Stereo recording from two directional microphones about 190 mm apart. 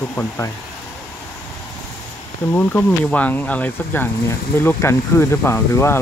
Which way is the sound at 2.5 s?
10° left (ahead or behind).